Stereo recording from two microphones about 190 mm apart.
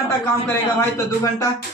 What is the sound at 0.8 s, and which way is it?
Speech, 15° left (ahead or behind).